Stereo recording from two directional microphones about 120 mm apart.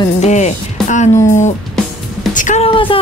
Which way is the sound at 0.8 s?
90° left.